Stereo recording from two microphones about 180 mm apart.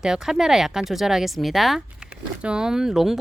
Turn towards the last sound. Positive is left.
turn(degrees=0)  # may be behind; listen again after turning